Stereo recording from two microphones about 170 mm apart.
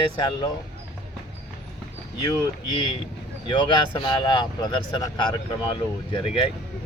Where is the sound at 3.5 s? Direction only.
30° left (ahead or behind).